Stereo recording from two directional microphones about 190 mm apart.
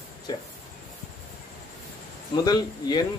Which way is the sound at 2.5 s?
20° left (ahead or behind).